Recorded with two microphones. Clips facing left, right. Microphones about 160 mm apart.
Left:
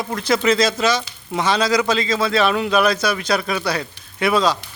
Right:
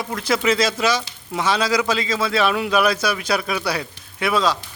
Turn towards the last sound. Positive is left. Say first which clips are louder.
# left 2 dB
turn(degrees=0)  # may be behind; listen again after turning